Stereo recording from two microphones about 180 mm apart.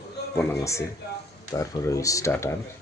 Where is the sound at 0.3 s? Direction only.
15° left (ahead or behind).